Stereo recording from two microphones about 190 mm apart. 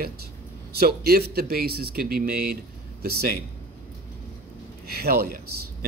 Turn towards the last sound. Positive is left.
turn(degrees=-55)  # may be behind; listen again after turning